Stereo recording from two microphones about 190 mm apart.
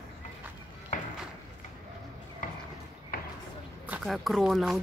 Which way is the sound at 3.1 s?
50° left (ahead or behind).